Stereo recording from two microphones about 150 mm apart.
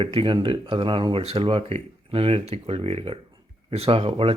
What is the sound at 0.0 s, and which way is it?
Speech, 35° right (ahead or behind).